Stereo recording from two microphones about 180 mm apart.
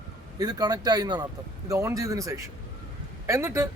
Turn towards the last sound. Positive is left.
turn(degrees=-15)  # may be behind; listen again after turning